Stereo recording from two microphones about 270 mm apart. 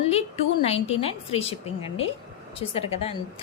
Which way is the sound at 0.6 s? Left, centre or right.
Left.